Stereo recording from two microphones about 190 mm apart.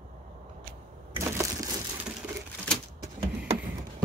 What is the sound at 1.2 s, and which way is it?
Crushing, 15° right (ahead or behind).